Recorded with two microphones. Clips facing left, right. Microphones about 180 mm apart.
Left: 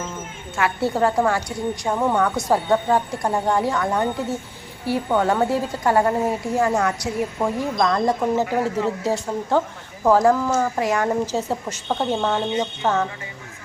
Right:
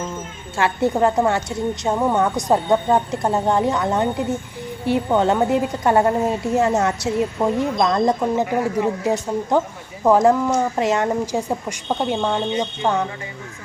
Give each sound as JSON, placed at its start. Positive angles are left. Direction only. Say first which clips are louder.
{"t": 0.5, "sound": "a woman's voice", "louder": "right 3 dB", "side_deg": -25}